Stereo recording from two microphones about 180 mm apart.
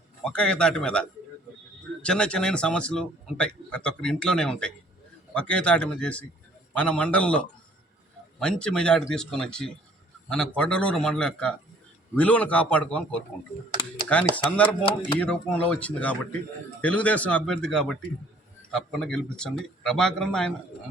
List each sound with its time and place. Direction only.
0.3 s a man's voice: 5° left (ahead or behind)